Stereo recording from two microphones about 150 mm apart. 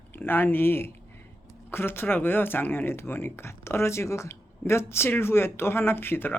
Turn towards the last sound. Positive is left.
turn(degrees=15)  # may be behind; listen again after turning